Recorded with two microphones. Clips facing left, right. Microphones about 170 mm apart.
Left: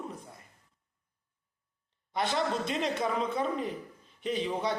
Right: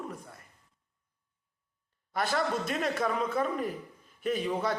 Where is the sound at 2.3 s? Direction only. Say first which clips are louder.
Right 1 dB; 20° left (ahead or behind).